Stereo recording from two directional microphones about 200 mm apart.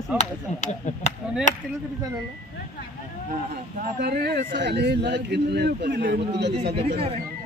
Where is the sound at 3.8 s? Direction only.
50° right (ahead or behind).